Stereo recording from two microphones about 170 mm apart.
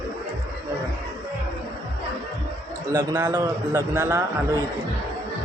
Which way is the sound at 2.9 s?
15° right (ahead or behind).